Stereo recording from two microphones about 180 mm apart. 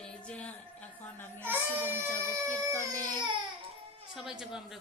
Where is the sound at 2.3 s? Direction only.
15° right (ahead or behind).